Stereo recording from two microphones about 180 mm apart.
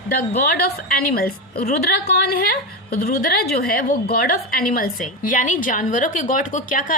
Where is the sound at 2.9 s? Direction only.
55° left (ahead or behind).